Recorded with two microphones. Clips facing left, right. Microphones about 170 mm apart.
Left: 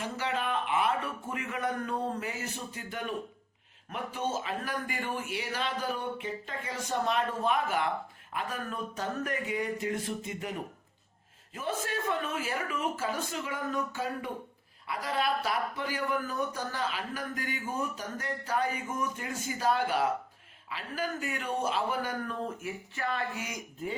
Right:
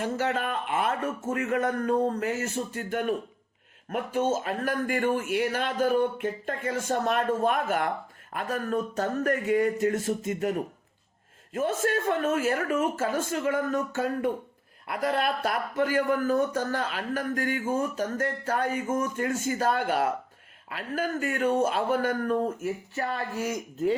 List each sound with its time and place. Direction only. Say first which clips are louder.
0.0 s speech: right 5 dB; 45° right (ahead or behind)